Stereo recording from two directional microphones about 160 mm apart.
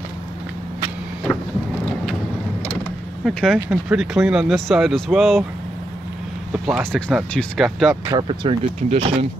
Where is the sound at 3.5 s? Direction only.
5° right (ahead or behind).